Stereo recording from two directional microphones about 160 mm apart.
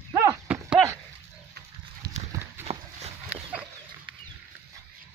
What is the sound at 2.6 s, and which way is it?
Horse, 40° right (ahead or behind).